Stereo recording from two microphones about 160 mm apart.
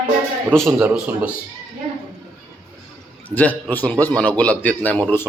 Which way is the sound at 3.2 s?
10° left (ahead or behind).